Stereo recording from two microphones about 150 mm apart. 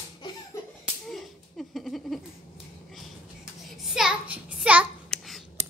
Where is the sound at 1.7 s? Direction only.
Centre (ahead or behind).